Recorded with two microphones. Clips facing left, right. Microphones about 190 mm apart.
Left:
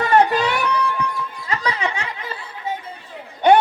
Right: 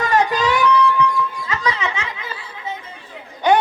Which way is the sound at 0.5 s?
35° left (ahead or behind).